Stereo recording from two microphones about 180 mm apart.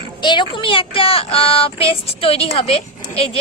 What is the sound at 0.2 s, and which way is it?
A woman's voice, 25° left (ahead or behind).